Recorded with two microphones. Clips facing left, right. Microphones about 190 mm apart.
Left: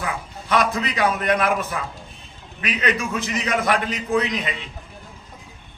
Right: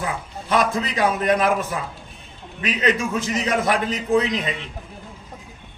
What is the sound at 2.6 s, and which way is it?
A man's voice, 25° right (ahead or behind).